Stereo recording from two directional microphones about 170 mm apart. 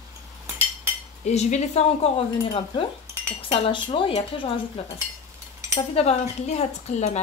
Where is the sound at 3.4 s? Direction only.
30° left (ahead or behind).